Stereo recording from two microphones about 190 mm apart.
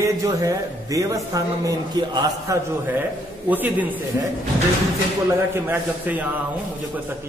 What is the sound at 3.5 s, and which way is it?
Speech, 10° right (ahead or behind).